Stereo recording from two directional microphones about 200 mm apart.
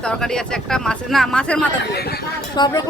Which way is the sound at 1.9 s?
50° left (ahead or behind).